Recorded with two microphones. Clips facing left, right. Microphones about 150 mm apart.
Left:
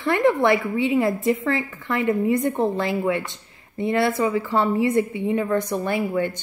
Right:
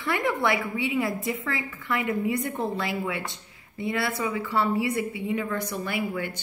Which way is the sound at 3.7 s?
45° left (ahead or behind).